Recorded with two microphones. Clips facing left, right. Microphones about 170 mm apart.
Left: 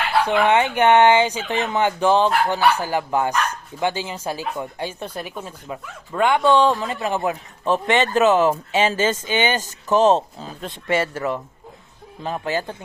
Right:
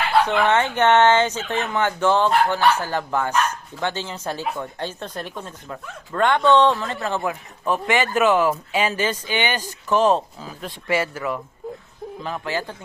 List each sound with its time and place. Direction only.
0.2 s speech: 10° left (ahead or behind)